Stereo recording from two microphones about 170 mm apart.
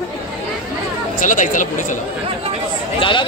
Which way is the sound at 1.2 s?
50° left (ahead or behind).